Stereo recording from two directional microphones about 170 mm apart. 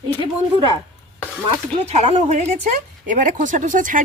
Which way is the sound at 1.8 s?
40° right (ahead or behind).